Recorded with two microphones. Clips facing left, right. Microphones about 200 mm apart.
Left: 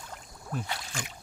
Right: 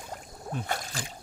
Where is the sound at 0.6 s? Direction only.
50° right (ahead or behind).